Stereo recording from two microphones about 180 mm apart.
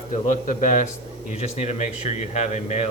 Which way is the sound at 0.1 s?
45° left (ahead or behind).